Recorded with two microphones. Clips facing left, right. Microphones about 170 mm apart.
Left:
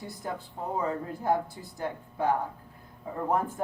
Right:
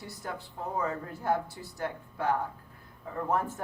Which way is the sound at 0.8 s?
15° left (ahead or behind).